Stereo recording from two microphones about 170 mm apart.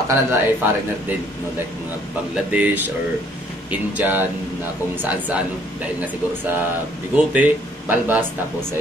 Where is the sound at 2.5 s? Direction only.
10° right (ahead or behind).